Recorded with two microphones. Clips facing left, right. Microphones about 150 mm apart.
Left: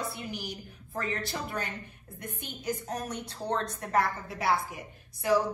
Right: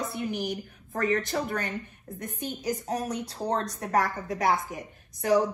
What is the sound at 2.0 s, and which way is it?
A woman's voice, 40° right (ahead or behind).